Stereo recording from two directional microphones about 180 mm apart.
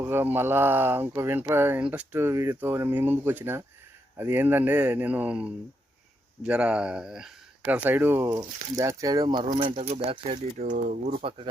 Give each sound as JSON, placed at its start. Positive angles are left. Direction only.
{"t": 0.0, "sound": "speech", "side_deg": -10}
{"t": 10.6, "sound": "speech", "side_deg": -50}
{"t": 11.2, "sound": "speech", "side_deg": -30}